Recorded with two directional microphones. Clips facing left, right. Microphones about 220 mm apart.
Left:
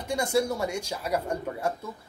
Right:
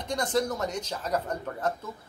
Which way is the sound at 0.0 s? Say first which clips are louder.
Left 2 dB; 10° left (ahead or behind).